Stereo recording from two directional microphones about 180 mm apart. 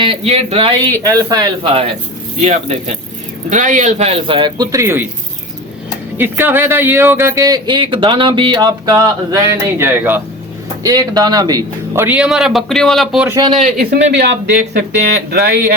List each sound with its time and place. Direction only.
0.0 s a man's voice: 30° right (ahead or behind)
2.4 s a man's voice: 35° right (ahead or behind); by 5.0 s 15° right (ahead or behind)
6.1 s speech: 10° right (ahead or behind)
13.2 s a man's voice: 25° right (ahead or behind)
13.6 s speech: 55° right (ahead or behind)
14.2 s speech: 65° right (ahead or behind)